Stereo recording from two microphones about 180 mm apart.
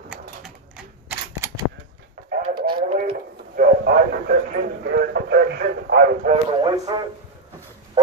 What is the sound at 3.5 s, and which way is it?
Speech, 55° right (ahead or behind).